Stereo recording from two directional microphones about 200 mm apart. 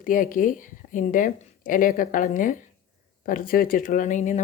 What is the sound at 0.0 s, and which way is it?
A woman's voice, 40° left (ahead or behind).